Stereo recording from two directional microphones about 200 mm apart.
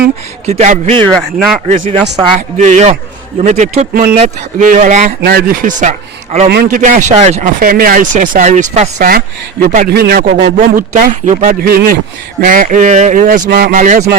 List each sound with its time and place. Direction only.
0.4 s speech: 35° right (ahead or behind)
1.1 s speech: centre (ahead or behind)
2.6 s speech: 35° right (ahead or behind)
5.2 s speech: 50° right (ahead or behind)
6.5 s speech: 45° right (ahead or behind)
9.0 s a man's voice: 50° right (ahead or behind)